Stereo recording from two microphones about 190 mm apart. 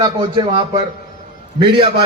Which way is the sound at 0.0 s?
30° right (ahead or behind).